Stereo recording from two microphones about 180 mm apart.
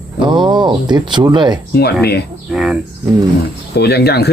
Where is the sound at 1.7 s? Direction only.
65° left (ahead or behind).